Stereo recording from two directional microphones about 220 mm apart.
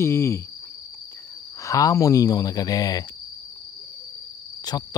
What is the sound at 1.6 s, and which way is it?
Speech, 15° left (ahead or behind).